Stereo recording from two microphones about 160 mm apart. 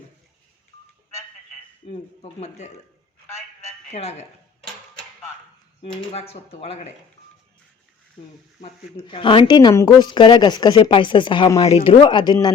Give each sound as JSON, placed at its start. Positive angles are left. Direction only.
{"t": 1.9, "sound": "speech", "side_deg": 40}
{"t": 3.2, "sound": "telephone", "side_deg": 15}
{"t": 3.9, "sound": "speech", "side_deg": 45}
{"t": 6.1, "sound": "speech", "side_deg": 40}
{"t": 8.6, "sound": "speech", "side_deg": 40}
{"t": 11.6, "sound": "speech", "side_deg": 35}